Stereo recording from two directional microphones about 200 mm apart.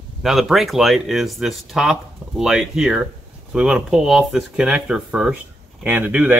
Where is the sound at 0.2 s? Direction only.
Centre (ahead or behind).